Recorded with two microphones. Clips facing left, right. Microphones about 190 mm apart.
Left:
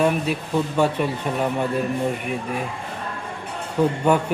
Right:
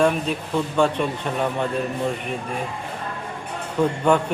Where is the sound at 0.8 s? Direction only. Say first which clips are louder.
Right 2 dB; 10° left (ahead or behind).